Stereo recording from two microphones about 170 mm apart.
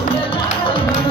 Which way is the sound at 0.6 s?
30° left (ahead or behind).